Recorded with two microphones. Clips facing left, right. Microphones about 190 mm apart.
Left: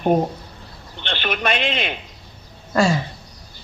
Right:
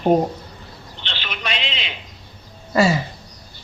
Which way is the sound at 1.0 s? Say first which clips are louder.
Left 7 dB; 55° left (ahead or behind).